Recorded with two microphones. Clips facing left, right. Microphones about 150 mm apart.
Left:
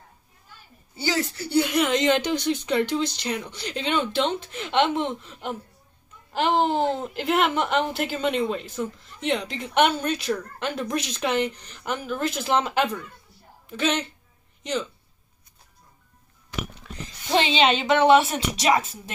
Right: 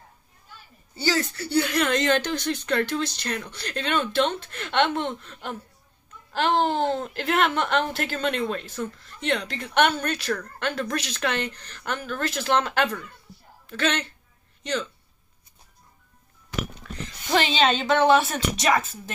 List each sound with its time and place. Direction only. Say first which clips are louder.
1.5 s speech: left 1 dB; 20° left (ahead or behind)
16.8 s a sound: right 2 dB; 15° left (ahead or behind)
17.6 s a woman's voice: left 1 dB; 20° left (ahead or behind)